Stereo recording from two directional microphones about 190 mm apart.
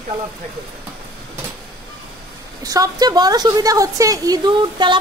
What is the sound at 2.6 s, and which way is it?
A woman's voice, 20° right (ahead or behind).